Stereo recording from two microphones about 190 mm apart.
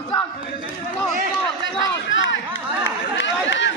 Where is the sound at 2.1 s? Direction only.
80° left.